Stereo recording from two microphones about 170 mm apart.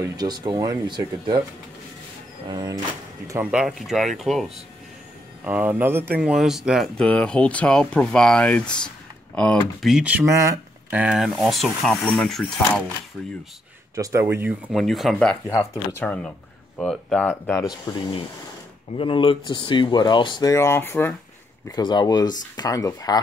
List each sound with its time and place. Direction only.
0.0 s speech: 20° right (ahead or behind)
2.5 s speech: 25° right (ahead or behind)
3.5 s speech: centre (ahead or behind)
13.9 s speech: 15° right (ahead or behind); by 15.3 s 5° left (ahead or behind)
15.4 s speech: 15° left (ahead or behind)
17.9 s speech: 20° left (ahead or behind)
21.6 s speech: 25° left (ahead or behind)